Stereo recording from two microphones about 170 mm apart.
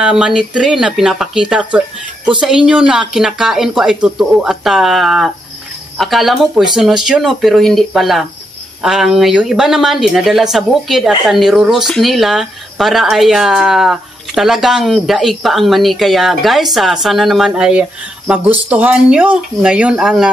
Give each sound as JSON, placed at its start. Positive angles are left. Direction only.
{"t": 0.0, "sound": "speech", "side_deg": -5}